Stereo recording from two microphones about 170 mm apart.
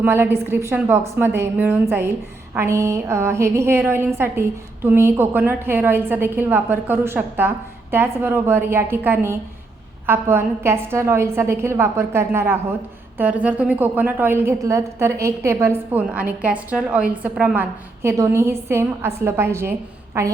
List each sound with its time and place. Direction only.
0.0 s a woman's voice: 15° right (ahead or behind)